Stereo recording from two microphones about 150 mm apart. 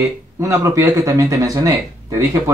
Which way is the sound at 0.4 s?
20° right (ahead or behind).